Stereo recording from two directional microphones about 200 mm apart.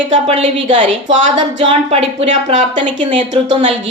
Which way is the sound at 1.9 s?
35° right (ahead or behind).